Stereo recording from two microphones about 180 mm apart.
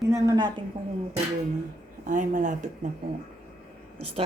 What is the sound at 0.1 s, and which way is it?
Speech, 20° right (ahead or behind).